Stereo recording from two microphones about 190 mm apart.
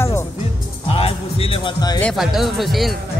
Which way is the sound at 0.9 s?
30° left (ahead or behind).